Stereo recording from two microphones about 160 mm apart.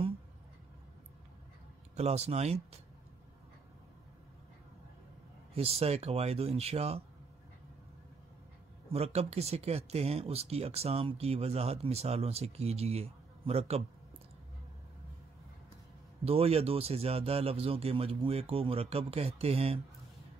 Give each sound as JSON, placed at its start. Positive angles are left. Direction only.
{"t": 2.0, "sound": "speech", "side_deg": -40}
{"t": 5.5, "sound": "speech", "side_deg": -40}
{"t": 8.9, "sound": "speech", "side_deg": -40}
{"t": 16.3, "sound": "speech", "side_deg": -40}